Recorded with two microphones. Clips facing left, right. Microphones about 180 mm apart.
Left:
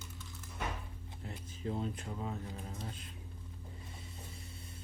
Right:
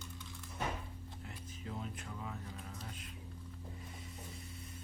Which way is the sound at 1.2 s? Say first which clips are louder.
Left 9 dB; 30° left (ahead or behind).